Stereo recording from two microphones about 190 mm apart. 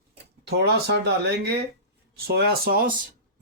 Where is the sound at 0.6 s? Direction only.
60° right (ahead or behind).